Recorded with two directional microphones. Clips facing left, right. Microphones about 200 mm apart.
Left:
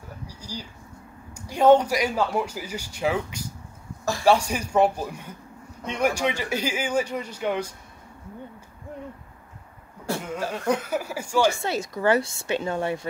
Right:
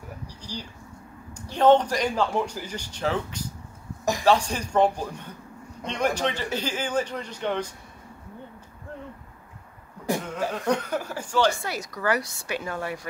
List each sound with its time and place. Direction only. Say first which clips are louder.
0.4 s a sound: even; 10° left (ahead or behind)
1.3 s a man's voice: left 1 dB; 10° left (ahead or behind)
10.5 s a man's voice: left 1 dB; 5° left (ahead or behind)
11.5 s a woman's voice: left 5 dB; 25° left (ahead or behind)